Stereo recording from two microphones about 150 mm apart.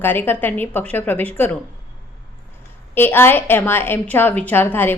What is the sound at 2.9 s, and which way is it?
A woman's voice, 15° left (ahead or behind).